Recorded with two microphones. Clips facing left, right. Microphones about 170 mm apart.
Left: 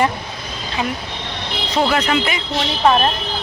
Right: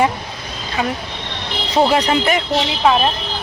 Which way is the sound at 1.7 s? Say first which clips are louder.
Right 3 dB; 25° right (ahead or behind).